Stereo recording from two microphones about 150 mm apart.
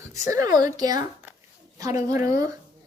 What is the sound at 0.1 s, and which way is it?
A woman's voice, 20° right (ahead or behind).